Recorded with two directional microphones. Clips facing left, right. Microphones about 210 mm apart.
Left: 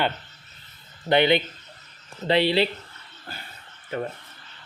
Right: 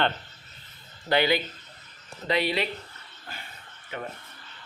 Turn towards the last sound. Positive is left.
turn(degrees=40)  # may be behind; listen again after turning